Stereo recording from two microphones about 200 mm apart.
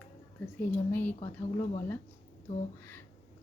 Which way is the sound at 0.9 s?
10° left (ahead or behind).